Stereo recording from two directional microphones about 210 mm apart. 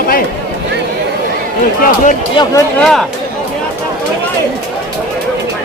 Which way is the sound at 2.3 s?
20° left (ahead or behind).